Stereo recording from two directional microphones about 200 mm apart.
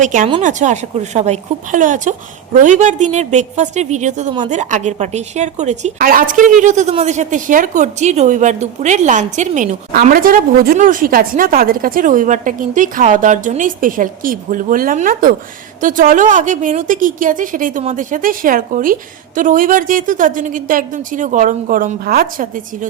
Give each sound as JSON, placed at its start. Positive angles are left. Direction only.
{"t": 0.0, "sound": "a woman's voice", "side_deg": -40}